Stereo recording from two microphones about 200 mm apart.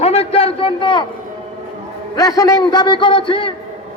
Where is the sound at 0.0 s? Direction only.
30° left (ahead or behind).